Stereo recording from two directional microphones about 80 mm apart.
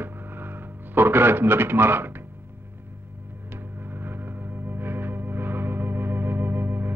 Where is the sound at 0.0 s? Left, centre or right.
Right.